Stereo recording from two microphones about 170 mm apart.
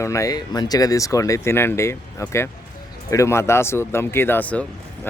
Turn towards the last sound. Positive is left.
turn(degrees=10)  # may be behind; listen again after turning